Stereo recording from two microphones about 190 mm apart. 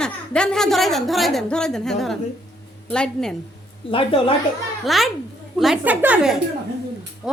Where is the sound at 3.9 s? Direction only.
30° left (ahead or behind).